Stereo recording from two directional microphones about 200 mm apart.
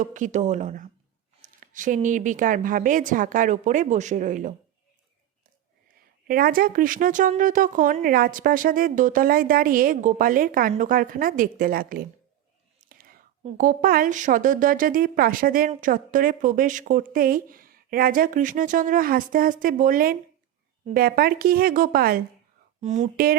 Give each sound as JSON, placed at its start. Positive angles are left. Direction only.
{"t": 0.0, "sound": "a woman's voice", "side_deg": -40}
{"t": 6.2, "sound": "a woman's voice", "side_deg": -45}
{"t": 12.8, "sound": "whispering", "side_deg": -45}
{"t": 13.4, "sound": "a woman's voice", "side_deg": -40}
{"t": 22.8, "sound": "a woman's voice", "side_deg": -35}